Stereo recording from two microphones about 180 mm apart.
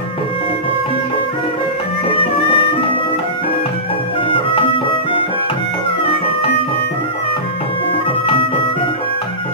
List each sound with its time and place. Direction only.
2.5 s music: 30° left (ahead or behind)